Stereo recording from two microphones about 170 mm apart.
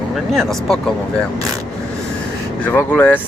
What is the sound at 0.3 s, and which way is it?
Speech, centre (ahead or behind).